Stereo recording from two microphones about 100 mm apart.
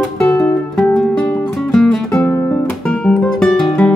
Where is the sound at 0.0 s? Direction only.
15° left (ahead or behind).